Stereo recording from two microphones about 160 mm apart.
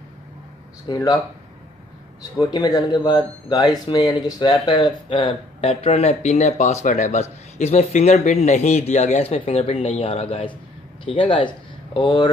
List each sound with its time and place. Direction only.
0.8 s speech: 25° left (ahead or behind)
2.3 s speech: 25° left (ahead or behind)